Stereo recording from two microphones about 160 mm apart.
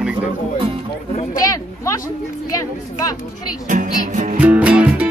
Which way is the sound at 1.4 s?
20° left (ahead or behind).